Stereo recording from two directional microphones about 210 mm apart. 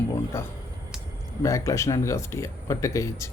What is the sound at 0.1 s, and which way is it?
A man's voice, 10° left (ahead or behind).